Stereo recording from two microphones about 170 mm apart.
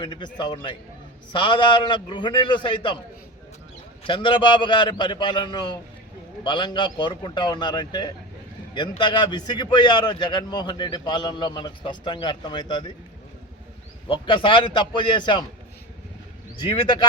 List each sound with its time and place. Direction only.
0.0 s a man's voice: 25° left (ahead or behind)
4.0 s a man's voice: 30° left (ahead or behind)
14.1 s a man's voice: 30° left (ahead or behind)